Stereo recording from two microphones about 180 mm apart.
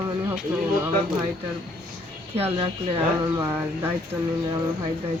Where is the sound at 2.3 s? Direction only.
35° right (ahead or behind).